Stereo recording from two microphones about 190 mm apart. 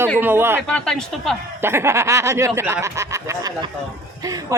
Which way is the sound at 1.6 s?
10° right (ahead or behind).